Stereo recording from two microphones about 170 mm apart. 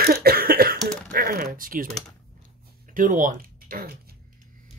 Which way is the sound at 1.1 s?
60° right (ahead or behind).